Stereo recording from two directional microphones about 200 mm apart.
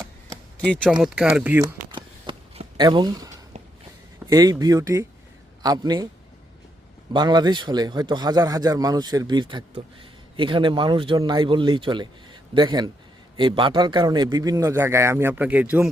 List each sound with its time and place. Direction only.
0.7 s speech: centre (ahead or behind)
1.9 s shuffling cards: 25° right (ahead or behind)
4.3 s a man's voice: 20° right (ahead or behind)
7.1 s a man's voice: 20° right (ahead or behind)